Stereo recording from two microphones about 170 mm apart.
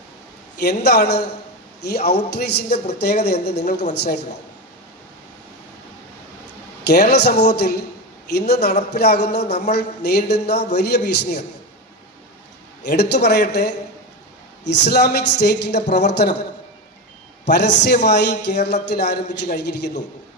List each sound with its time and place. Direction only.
0.6 s a woman's voice: 80° left
6.8 s a woman's voice: 75° left (ahead or behind)
12.8 s a man's voice: 80° left
14.8 s a man's voice: 75° left (ahead or behind)
17.4 s a man's voice: 85° left